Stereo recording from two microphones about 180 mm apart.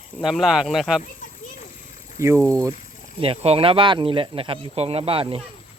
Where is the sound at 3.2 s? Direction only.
35° right (ahead or behind).